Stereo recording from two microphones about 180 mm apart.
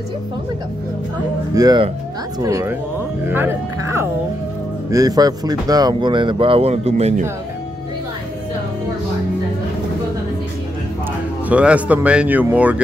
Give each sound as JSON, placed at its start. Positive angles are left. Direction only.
{"t": 1.5, "sound": "speech", "side_deg": -20}
{"t": 11.4, "sound": "speech", "side_deg": -5}